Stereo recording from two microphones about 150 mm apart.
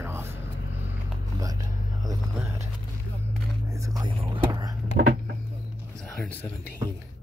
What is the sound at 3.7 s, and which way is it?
Whispering, 25° right (ahead or behind).